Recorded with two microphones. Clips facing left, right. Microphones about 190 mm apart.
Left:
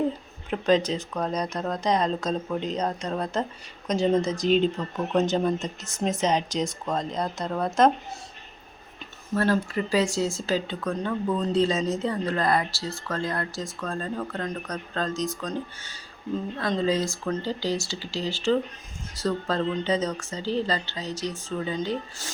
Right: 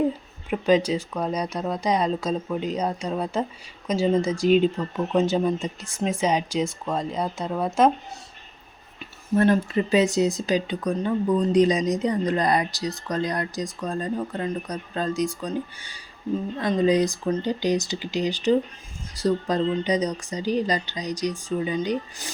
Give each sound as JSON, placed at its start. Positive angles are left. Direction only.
{"t": 0.5, "sound": "speech", "side_deg": -10}
{"t": 9.3, "sound": "speech", "side_deg": -20}